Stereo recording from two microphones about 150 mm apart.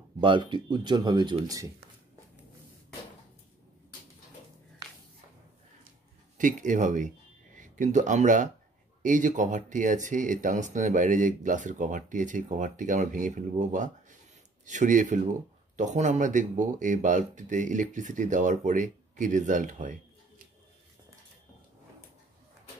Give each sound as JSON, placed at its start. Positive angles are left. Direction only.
{"t": 0.2, "sound": "speech", "side_deg": -35}
{"t": 6.3, "sound": "speech", "side_deg": -60}